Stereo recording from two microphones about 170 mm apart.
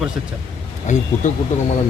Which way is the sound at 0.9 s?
45° left (ahead or behind).